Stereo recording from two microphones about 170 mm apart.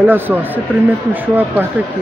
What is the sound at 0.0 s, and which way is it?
Speech, 10° right (ahead or behind).